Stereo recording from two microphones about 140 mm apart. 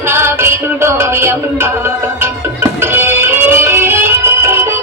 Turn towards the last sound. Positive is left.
turn(degrees=-15)  # may be behind; listen again after turning